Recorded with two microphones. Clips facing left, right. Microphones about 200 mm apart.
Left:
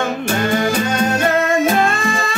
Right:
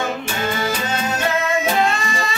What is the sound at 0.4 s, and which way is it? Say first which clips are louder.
Music: left 6 dB; 55° left (ahead or behind).